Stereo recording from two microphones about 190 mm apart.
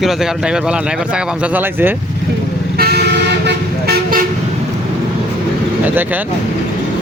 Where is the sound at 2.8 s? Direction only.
55° right (ahead or behind).